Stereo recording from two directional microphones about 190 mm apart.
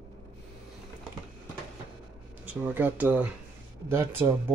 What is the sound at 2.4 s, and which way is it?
Speech, 10° right (ahead or behind).